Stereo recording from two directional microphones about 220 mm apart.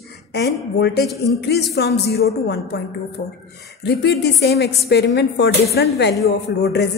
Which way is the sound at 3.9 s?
50° left (ahead or behind).